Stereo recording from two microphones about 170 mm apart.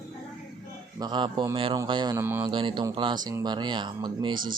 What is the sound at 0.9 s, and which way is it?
Speech, 25° right (ahead or behind).